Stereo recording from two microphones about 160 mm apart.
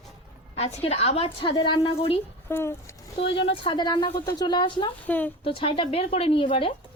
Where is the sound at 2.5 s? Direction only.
15° left (ahead or behind).